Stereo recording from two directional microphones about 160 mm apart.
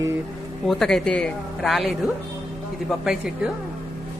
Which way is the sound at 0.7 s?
5° left (ahead or behind).